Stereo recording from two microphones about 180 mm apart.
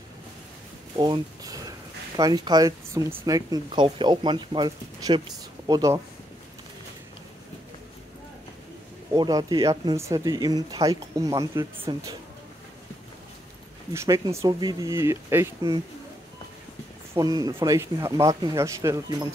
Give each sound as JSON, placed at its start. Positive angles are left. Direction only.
{"t": 0.9, "sound": "speech", "side_deg": -25}
{"t": 9.1, "sound": "speech", "side_deg": -20}
{"t": 13.9, "sound": "speech", "side_deg": -20}
{"t": 17.1, "sound": "speech", "side_deg": -20}